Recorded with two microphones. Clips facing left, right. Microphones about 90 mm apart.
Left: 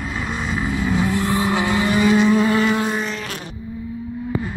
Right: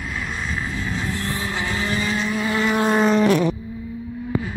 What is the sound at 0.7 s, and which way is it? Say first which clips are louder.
Vehicle: left 7 dB; 15° left (ahead or behind).